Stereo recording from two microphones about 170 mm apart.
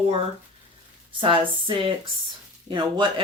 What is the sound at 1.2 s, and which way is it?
Speech, 30° right (ahead or behind).